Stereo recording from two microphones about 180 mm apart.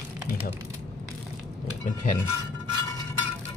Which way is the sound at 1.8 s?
45° left (ahead or behind).